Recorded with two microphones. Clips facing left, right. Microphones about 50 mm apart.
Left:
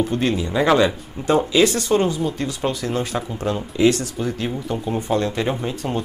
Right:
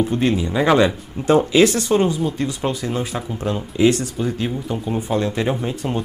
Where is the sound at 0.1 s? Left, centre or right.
Centre.